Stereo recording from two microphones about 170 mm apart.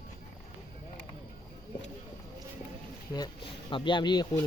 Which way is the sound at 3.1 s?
25° left (ahead or behind).